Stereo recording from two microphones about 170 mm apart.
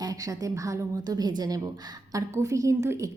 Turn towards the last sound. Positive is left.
turn(degrees=-15)  # may be behind; listen again after turning